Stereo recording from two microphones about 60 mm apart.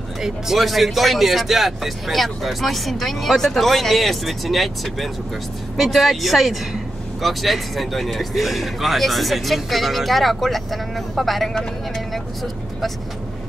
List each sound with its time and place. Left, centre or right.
0.2 s speech: centre